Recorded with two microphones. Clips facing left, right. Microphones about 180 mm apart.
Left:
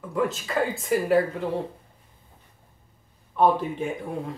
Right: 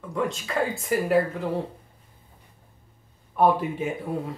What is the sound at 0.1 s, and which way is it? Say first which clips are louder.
Speech: left 2 dB; centre (ahead or behind).